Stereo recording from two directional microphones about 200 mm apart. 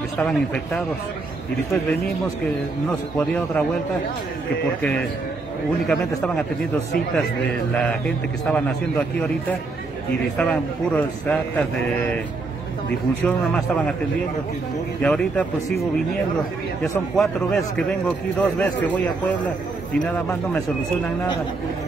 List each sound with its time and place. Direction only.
0.2 s speech: centre (ahead or behind)
1.7 s a man's voice: 15° left (ahead or behind)
5.9 s speech: 5° left (ahead or behind)
8.5 s speech: 5° left (ahead or behind)
10.3 s a man's voice: 5° left (ahead or behind)
13.2 s speech: 5° left (ahead or behind)
15.0 s speech: 5° left (ahead or behind)
17.1 s a man's voice: centre (ahead or behind)